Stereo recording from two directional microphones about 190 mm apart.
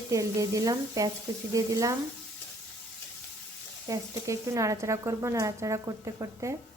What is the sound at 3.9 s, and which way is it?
Speech, 15° right (ahead or behind).